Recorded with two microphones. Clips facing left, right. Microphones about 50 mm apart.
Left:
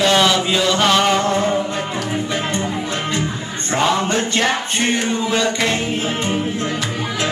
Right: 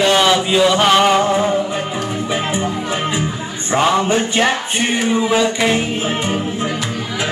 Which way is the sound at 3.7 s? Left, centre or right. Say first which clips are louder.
Right 3 dB; centre.